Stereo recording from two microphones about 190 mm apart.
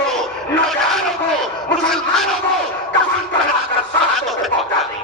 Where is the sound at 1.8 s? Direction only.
Centre (ahead or behind).